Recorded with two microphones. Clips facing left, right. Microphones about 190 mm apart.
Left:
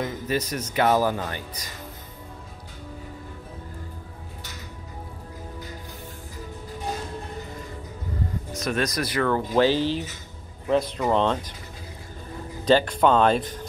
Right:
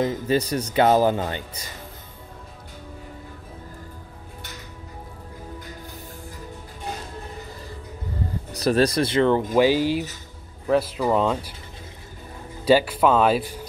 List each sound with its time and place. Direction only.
0.0 s speech: 30° right (ahead or behind)
8.5 s speech: 35° right (ahead or behind)
9.6 s speech: 10° right (ahead or behind)
12.6 s speech: 5° right (ahead or behind)